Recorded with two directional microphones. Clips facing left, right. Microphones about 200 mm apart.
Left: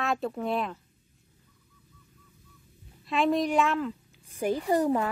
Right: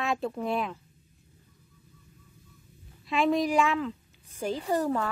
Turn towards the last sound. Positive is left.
turn(degrees=15)  # may be behind; listen again after turning